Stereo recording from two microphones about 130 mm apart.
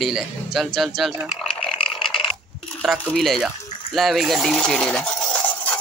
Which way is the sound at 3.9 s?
Centre (ahead or behind).